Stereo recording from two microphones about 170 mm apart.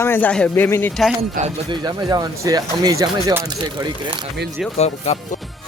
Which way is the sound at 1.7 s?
25° right (ahead or behind).